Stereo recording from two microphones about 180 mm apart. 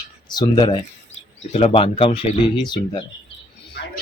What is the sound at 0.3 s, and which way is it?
Speech, 25° left (ahead or behind).